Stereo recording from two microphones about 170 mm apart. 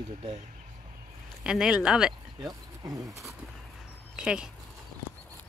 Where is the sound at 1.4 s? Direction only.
5° right (ahead or behind).